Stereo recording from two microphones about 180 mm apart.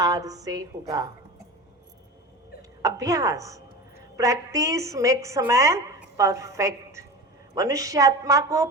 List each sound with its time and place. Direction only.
0.0 s a woman's voice: 20° right (ahead or behind)
2.6 s a woman's voice: 20° right (ahead or behind)